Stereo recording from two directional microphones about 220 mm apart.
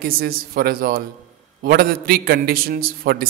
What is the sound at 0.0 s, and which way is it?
A man's voice, 45° right (ahead or behind).